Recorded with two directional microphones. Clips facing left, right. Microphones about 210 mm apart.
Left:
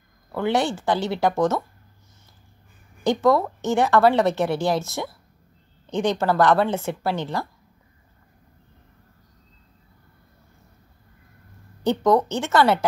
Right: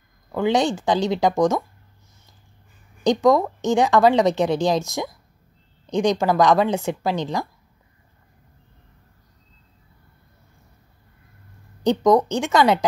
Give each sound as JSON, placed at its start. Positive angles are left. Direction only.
{"t": 0.3, "sound": "a woman's voice", "side_deg": -15}
{"t": 3.0, "sound": "a woman's voice", "side_deg": -15}
{"t": 11.8, "sound": "a woman's voice", "side_deg": -15}